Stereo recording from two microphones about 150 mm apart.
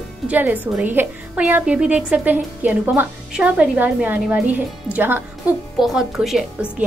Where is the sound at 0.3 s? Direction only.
10° right (ahead or behind).